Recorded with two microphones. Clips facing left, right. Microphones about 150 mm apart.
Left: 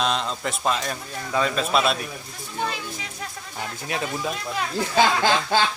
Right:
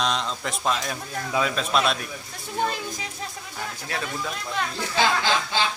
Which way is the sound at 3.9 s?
20° left (ahead or behind).